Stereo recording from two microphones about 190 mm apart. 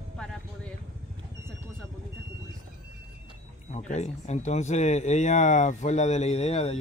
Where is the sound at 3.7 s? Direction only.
35° left (ahead or behind).